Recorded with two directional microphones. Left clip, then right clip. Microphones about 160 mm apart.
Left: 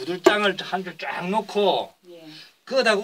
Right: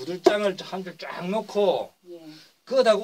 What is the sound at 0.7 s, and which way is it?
Speech, 10° right (ahead or behind).